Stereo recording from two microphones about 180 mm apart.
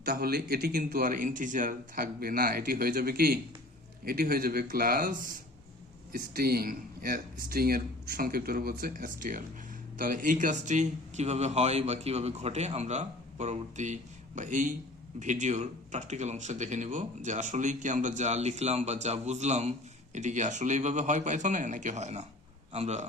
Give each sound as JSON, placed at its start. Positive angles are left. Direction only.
{"t": 0.0, "sound": "a man's voice", "side_deg": -60}